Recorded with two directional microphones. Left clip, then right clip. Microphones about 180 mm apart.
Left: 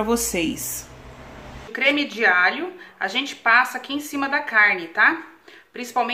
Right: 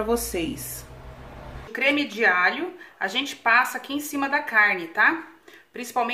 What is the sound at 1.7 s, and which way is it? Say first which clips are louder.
A woman's voice: left 2 dB; 5° left (ahead or behind).